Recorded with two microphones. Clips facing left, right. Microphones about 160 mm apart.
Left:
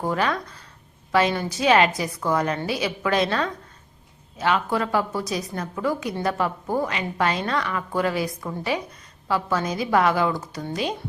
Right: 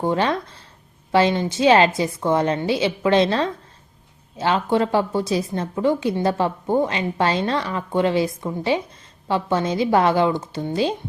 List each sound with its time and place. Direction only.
0.0 s a woman's voice: 25° right (ahead or behind)